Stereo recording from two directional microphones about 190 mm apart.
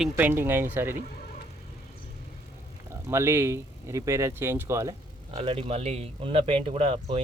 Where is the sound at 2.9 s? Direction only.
15° right (ahead or behind).